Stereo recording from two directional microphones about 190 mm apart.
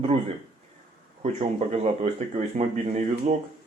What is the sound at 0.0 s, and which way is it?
Speech, 30° right (ahead or behind).